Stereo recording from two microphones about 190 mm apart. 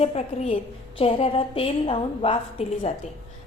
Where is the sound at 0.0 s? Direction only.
35° left (ahead or behind).